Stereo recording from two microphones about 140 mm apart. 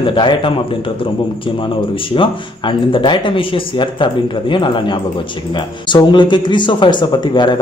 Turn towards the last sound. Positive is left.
turn(degrees=30)  # may be behind; listen again after turning